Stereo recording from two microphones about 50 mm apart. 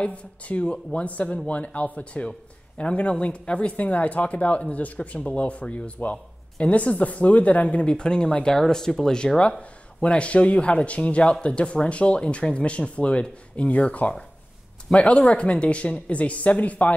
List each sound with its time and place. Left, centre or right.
0.0 s speech: left
7.9 s speech: centre